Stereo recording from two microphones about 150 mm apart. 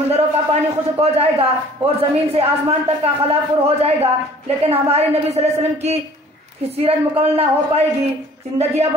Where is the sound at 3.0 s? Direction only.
45° right (ahead or behind).